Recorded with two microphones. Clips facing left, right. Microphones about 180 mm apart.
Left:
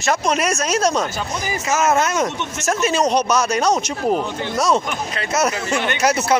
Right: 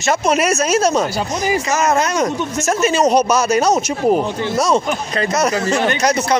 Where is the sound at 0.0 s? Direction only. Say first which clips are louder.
Right 3 dB; 5° right (ahead or behind).